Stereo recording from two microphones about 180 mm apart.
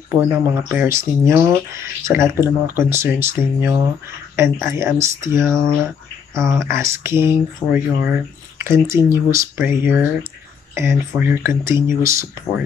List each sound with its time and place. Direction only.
0.1 s speech: 10° right (ahead or behind)